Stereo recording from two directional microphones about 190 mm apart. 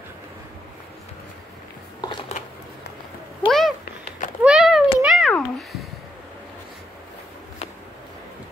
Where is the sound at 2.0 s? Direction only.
25° left (ahead or behind).